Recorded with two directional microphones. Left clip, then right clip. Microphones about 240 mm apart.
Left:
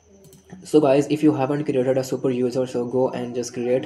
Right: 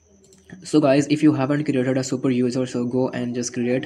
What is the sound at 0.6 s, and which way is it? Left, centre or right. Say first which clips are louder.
Speech: left 1 dB; right.